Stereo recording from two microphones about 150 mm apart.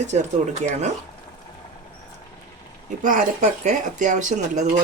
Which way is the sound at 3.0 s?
60° right (ahead or behind).